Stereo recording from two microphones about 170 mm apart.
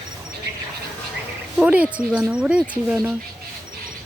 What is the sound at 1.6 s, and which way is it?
Speech, 5° right (ahead or behind).